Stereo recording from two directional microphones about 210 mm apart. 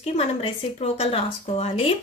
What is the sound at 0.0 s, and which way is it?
A woman's voice, 30° left (ahead or behind).